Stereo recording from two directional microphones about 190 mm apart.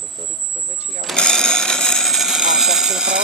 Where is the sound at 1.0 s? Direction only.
5° left (ahead or behind).